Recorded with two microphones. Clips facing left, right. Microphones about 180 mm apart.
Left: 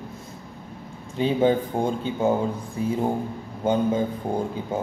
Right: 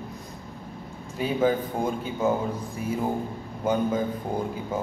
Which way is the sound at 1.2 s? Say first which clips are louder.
Left 3 dB; 25° left (ahead or behind).